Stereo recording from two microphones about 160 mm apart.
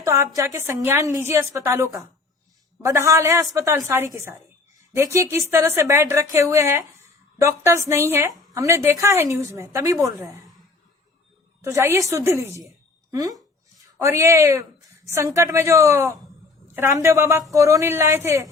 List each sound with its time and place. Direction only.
0.0 s a woman's voice: 20° right (ahead or behind)
11.6 s a woman's voice: 15° right (ahead or behind)